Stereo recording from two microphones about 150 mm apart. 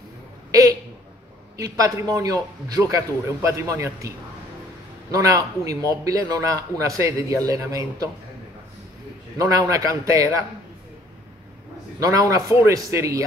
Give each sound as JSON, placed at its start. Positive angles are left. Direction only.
{"t": 0.5, "sound": "a sound", "side_deg": -25}
{"t": 1.6, "sound": "a man's voice", "side_deg": -25}
{"t": 5.1, "sound": "a man's voice", "side_deg": -20}
{"t": 9.4, "sound": "a man's voice", "side_deg": -25}
{"t": 12.0, "sound": "a man's voice", "side_deg": -20}